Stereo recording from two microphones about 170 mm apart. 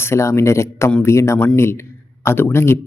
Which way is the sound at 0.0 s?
15° left (ahead or behind).